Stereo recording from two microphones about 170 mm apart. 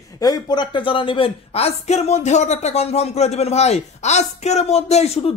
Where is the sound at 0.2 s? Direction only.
25° left (ahead or behind).